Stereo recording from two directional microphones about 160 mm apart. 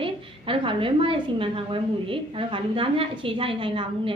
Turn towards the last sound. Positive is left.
turn(degrees=-35)  # may be behind; listen again after turning